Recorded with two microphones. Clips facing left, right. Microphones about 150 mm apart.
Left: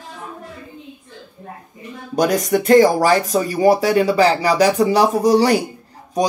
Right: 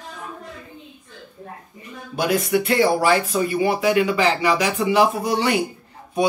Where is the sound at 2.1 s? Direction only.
40° left (ahead or behind).